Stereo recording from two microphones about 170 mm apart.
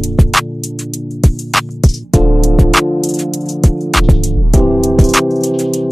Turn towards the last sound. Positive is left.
turn(degrees=0)  # may be behind; listen again after turning